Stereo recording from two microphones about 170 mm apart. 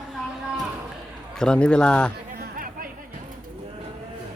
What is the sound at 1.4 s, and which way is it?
Speech, 5° left (ahead or behind).